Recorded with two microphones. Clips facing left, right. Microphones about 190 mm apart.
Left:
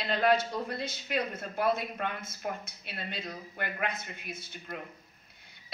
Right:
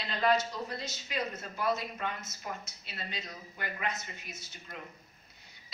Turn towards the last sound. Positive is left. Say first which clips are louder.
# left 6 dB
turn(degrees=55)  # may be behind; listen again after turning